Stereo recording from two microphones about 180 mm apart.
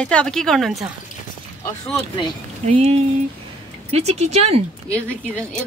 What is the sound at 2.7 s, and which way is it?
Speech, 35° right (ahead or behind).